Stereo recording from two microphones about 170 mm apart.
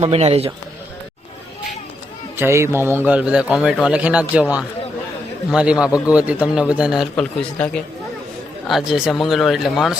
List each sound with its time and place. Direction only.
0.0 s speech: 40° right (ahead or behind)
2.3 s a man's voice: 15° right (ahead or behind)
8.6 s speech: centre (ahead or behind)